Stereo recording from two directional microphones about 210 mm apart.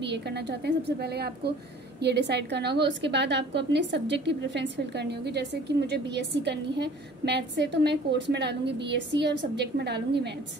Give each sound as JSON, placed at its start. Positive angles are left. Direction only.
{"t": 0.0, "sound": "a woman's voice", "side_deg": -55}